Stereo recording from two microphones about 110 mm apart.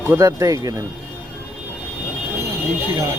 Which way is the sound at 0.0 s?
25° right (ahead or behind).